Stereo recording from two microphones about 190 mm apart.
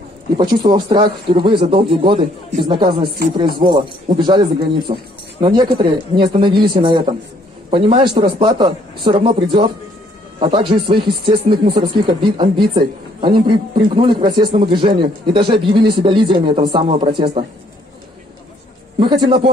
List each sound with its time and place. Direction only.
0.4 s speech: 25° right (ahead or behind)
18.9 s speech: 25° right (ahead or behind)